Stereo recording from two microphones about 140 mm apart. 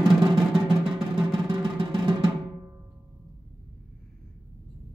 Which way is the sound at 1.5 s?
35° right (ahead or behind).